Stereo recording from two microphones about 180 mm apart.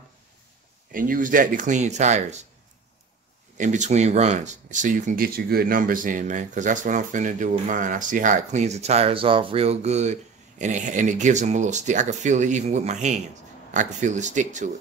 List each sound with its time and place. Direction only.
0.9 s speech: 50° right (ahead or behind)
3.5 s speech: 45° right (ahead or behind)